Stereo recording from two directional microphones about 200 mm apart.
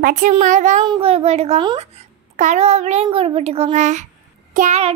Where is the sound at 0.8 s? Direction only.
25° right (ahead or behind).